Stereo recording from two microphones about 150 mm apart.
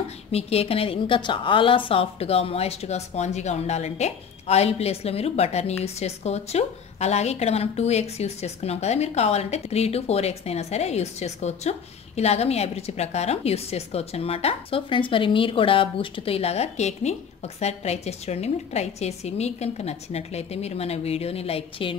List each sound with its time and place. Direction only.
0.3 s a woman's voice: 45° left (ahead or behind)